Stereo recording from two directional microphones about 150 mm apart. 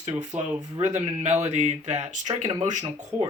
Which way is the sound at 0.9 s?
50° right (ahead or behind).